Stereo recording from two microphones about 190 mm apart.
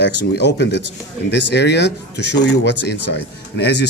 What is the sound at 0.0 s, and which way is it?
Speech, 60° left (ahead or behind).